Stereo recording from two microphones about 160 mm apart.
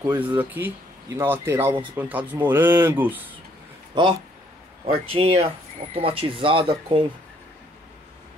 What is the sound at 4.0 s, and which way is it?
Speech, 25° right (ahead or behind).